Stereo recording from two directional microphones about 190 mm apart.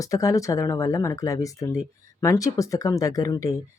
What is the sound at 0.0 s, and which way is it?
Speech, 20° left (ahead or behind).